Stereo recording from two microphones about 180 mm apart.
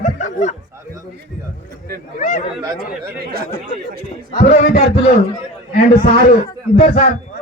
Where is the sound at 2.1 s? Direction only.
45° left (ahead or behind).